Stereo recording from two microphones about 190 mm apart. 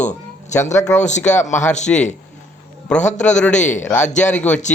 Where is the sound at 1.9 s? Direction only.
5° left (ahead or behind).